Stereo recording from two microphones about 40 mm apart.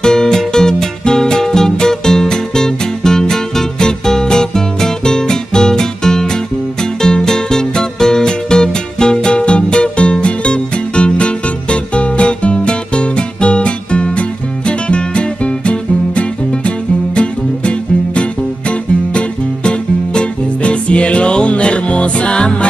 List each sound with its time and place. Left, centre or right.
0.0 s music: centre